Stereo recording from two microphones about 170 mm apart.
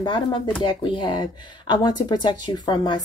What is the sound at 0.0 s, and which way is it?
Speech, 30° left (ahead or behind).